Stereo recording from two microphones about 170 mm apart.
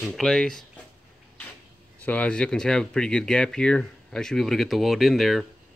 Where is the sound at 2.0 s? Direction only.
10° left (ahead or behind).